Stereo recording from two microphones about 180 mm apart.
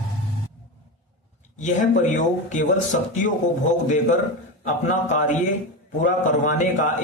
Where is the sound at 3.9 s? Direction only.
45° left (ahead or behind).